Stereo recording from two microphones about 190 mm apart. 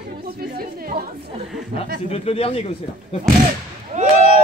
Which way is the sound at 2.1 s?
30° left (ahead or behind).